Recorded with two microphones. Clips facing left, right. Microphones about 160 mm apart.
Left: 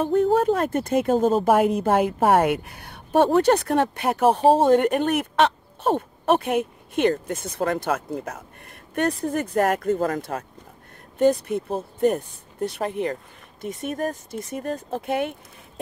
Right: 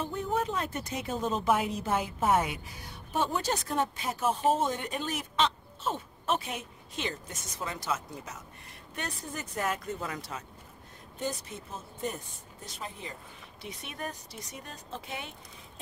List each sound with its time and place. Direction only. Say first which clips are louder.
0.0 s speech: left 12 dB; 55° left (ahead or behind)
13.6 s speech: left 13 dB; 45° left (ahead or behind)